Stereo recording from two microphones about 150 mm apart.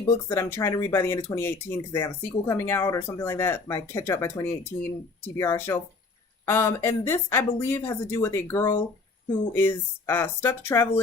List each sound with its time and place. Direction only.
0.3 s speech: 15° left (ahead or behind)